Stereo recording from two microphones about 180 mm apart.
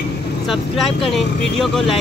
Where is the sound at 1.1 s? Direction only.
Centre (ahead or behind).